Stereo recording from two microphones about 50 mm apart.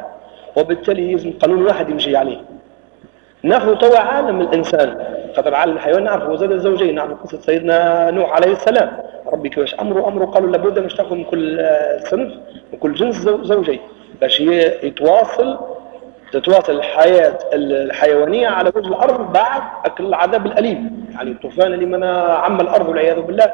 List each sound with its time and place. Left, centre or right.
0.6 s a man's voice: centre
3.4 s a man's voice: centre